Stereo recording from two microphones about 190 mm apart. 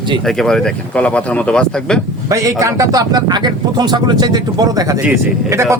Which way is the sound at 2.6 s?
20° right (ahead or behind).